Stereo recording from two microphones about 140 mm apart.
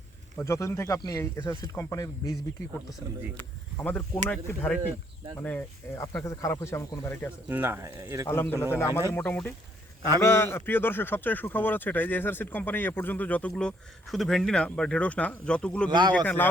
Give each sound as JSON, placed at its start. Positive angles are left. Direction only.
{"t": 0.4, "sound": "speech", "side_deg": 20}
{"t": 3.3, "sound": "a man's voice", "side_deg": 15}
{"t": 7.4, "sound": "speech", "side_deg": -15}
{"t": 8.3, "sound": "a man's voice", "side_deg": 15}
{"t": 15.9, "sound": "speech", "side_deg": -30}
{"t": 16.1, "sound": "a man's voice", "side_deg": 15}